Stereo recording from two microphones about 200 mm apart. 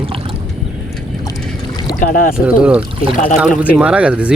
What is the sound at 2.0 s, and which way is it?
Speech, 45° left (ahead or behind).